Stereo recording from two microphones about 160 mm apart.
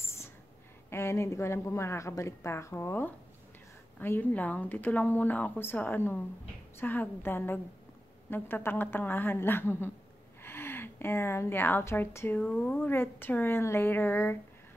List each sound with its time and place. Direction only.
0.8 s a woman's voice: 15° left (ahead or behind)